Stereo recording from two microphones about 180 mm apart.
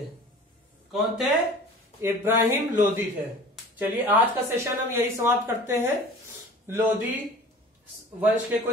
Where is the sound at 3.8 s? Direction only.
10° right (ahead or behind).